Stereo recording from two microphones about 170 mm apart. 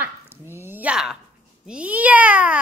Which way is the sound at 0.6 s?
10° right (ahead or behind).